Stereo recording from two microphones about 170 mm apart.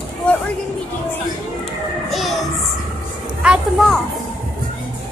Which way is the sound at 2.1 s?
Centre (ahead or behind).